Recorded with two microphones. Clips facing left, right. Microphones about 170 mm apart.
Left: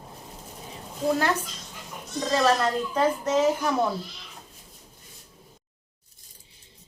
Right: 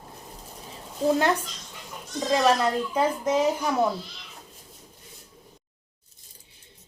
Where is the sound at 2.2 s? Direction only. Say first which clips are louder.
Right 1 dB; 15° right (ahead or behind).